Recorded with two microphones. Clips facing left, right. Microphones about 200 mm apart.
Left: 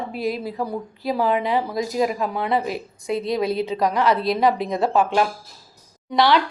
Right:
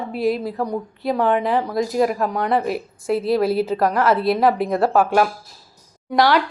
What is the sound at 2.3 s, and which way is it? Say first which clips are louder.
Speech: right 3 dB; centre (ahead or behind).